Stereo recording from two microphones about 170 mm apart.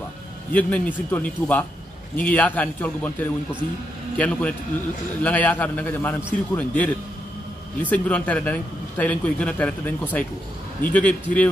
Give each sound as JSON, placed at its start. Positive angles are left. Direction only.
{"t": 0.5, "sound": "a man's voice", "side_deg": 10}